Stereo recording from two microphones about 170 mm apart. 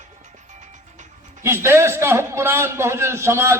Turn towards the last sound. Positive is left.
turn(degrees=-15)  # may be behind; listen again after turning